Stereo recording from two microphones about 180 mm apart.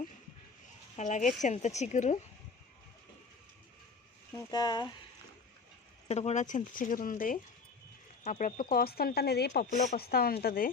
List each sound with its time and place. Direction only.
0.9 s speech: 45° left (ahead or behind)
4.4 s speech: 20° left (ahead or behind)
6.1 s speech: 40° left (ahead or behind); by 9.5 s 60° left (ahead or behind)
9.6 s speech: 45° left (ahead or behind)
10.0 s speech: 60° left (ahead or behind)